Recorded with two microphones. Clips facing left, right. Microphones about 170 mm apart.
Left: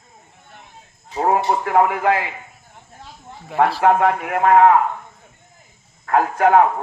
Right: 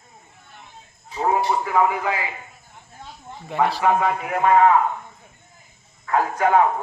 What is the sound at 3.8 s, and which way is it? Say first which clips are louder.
Speech: left 4 dB; 60° left (ahead or behind).